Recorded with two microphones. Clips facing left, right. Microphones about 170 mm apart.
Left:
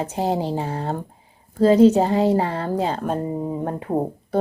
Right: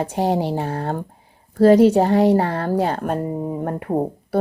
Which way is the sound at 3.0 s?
10° right (ahead or behind).